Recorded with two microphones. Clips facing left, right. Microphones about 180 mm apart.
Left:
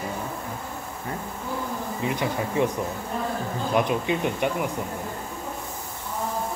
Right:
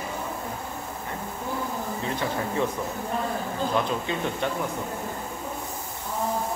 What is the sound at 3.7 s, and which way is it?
Speech, 15° left (ahead or behind).